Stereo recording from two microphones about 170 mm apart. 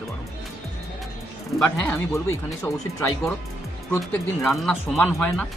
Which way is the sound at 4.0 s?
Centre (ahead or behind).